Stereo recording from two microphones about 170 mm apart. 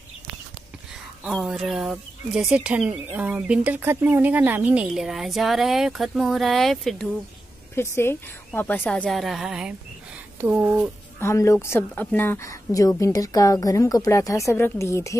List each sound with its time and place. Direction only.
1.2 s speech: centre (ahead or behind)
7.7 s a woman's voice: 15° left (ahead or behind); by 10.9 s 10° right (ahead or behind)
11.1 s a woman's voice: 15° left (ahead or behind)